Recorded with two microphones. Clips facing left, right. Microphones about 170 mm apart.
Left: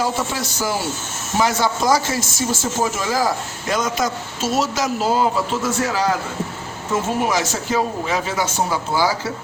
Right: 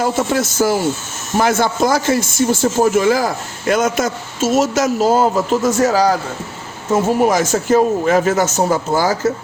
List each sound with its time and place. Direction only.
0.0 s a man's voice: 50° right (ahead or behind)
7.3 s speech: 45° right (ahead or behind)